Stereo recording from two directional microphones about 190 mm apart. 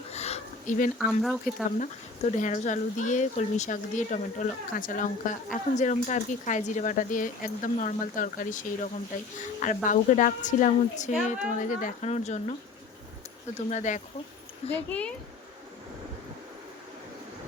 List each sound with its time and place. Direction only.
0.1 s a sound: 35° left (ahead or behind)
0.9 s speech: centre (ahead or behind)
1.8 s a woman's voice: 40° left (ahead or behind)
13.7 s speech: 40° left (ahead or behind)
14.7 s a child's voice: 5° left (ahead or behind)